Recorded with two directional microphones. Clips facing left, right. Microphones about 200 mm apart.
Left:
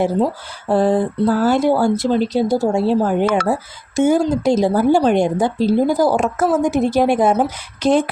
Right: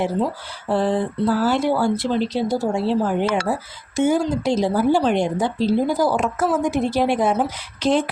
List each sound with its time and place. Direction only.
0.7 s speech: 45° left (ahead or behind)